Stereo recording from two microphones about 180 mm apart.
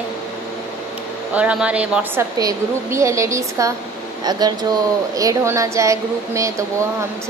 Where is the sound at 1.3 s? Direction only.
5° right (ahead or behind).